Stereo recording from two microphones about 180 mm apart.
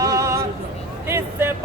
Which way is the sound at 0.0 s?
15° right (ahead or behind).